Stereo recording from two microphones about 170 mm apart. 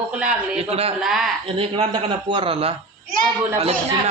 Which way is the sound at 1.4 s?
35° right (ahead or behind).